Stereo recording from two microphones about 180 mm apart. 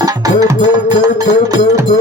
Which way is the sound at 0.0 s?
20° right (ahead or behind).